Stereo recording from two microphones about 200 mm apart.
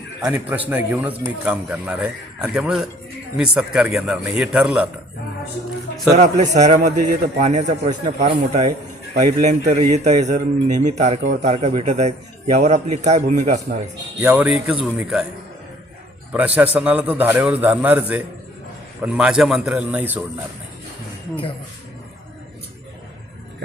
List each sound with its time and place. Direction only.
0.2 s a man's voice: 10° right (ahead or behind)
6.1 s speech: 35° right (ahead or behind)
14.2 s a man's voice: 5° right (ahead or behind)
16.7 s a man's voice: 5° right (ahead or behind)